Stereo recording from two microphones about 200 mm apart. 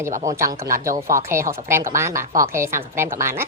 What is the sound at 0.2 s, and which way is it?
A woman's voice, 15° right (ahead or behind).